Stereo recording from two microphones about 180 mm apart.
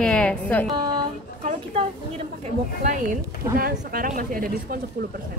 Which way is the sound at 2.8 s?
45° right (ahead or behind).